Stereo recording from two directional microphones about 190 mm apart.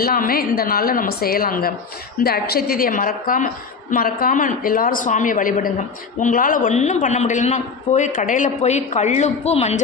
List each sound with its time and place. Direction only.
0.0 s a man's voice: 50° left (ahead or behind); by 9.8 s 35° left (ahead or behind)